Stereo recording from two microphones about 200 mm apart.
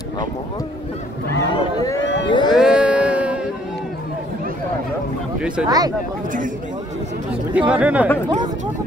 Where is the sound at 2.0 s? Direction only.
65° left (ahead or behind).